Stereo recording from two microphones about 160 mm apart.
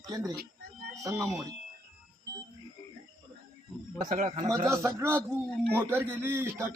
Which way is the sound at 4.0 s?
50° right (ahead or behind).